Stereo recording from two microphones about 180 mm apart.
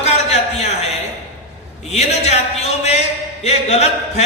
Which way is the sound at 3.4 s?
35° left (ahead or behind).